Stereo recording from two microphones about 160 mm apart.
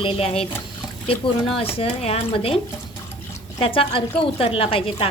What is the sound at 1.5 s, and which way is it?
A woman's voice, 35° left (ahead or behind).